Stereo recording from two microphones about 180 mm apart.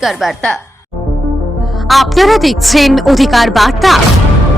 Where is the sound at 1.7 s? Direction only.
Centre (ahead or behind).